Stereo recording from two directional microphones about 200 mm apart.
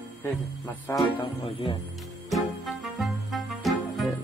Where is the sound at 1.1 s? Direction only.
20° left (ahead or behind).